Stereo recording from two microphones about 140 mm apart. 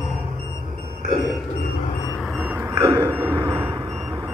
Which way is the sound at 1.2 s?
Centre (ahead or behind).